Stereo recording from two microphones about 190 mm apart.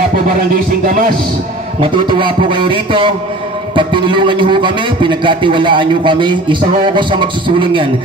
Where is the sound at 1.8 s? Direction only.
25° right (ahead or behind).